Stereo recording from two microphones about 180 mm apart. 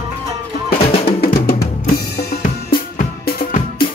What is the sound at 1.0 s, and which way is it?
Music, 55° left (ahead or behind).